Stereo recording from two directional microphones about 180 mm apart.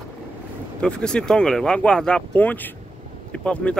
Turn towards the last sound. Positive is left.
turn(degrees=5)  # may be behind; listen again after turning